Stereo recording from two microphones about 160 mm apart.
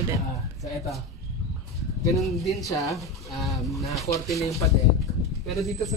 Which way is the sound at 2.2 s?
Centre (ahead or behind).